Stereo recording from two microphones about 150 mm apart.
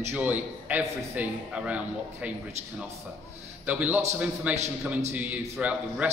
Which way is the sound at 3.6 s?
10° right (ahead or behind).